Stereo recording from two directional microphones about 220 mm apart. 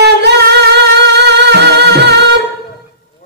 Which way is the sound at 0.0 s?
50° right (ahead or behind).